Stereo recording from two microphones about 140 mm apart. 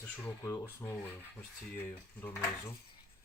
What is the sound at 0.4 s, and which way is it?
Speech, 20° left (ahead or behind).